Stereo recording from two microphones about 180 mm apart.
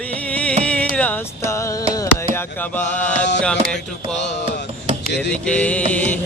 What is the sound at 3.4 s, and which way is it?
Music, 5° left (ahead or behind).